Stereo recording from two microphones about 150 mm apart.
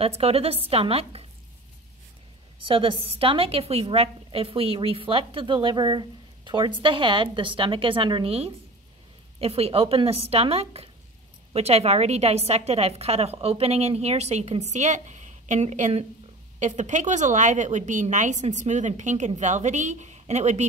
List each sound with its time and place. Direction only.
0.0 s a woman's voice: 40° right (ahead or behind)
2.6 s a woman's voice: 35° right (ahead or behind)